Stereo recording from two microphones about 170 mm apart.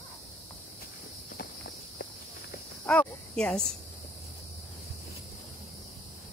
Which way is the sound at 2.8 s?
5° left (ahead or behind).